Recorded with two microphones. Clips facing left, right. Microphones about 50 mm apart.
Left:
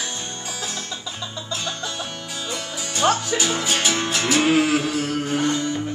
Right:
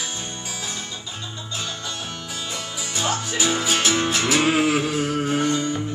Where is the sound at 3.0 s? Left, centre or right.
Left.